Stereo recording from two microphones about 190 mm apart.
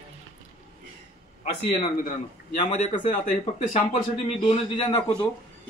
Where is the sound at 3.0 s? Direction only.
40° left (ahead or behind).